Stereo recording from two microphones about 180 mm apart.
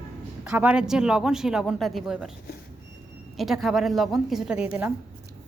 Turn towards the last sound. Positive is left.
turn(degrees=-5)  # may be behind; listen again after turning